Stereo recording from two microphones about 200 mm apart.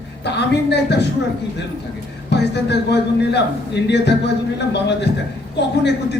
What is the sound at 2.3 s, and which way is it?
A man's voice, 60° left (ahead or behind).